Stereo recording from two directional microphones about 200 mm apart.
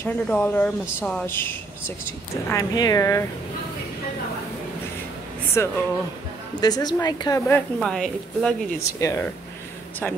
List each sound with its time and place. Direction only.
0.0 s a woman's voice: 10° left (ahead or behind)
5.6 s a woman's voice: 15° left (ahead or behind)
8.7 s a woman's voice: 15° left (ahead or behind)